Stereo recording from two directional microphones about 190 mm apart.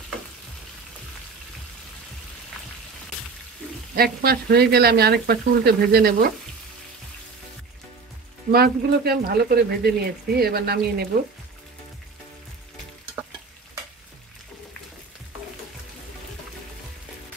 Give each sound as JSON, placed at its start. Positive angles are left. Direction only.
{"t": 3.9, "sound": "speech", "side_deg": -55}
{"t": 8.5, "sound": "speech", "side_deg": -55}